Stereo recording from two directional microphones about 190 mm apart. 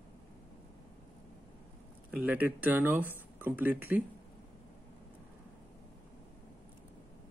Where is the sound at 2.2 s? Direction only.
10° right (ahead or behind).